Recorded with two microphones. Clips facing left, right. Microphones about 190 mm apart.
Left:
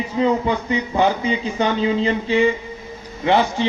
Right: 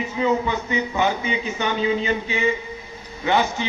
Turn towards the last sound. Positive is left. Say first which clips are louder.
# left 4 dB
turn(degrees=30)  # may be behind; listen again after turning